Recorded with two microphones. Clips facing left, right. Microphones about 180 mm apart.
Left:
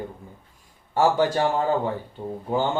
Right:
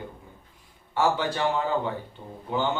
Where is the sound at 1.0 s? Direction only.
45° left (ahead or behind).